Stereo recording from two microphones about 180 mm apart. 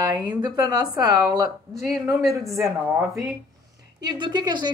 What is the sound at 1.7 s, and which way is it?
Speech, centre (ahead or behind).